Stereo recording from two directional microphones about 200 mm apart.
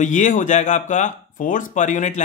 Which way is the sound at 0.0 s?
40° left (ahead or behind).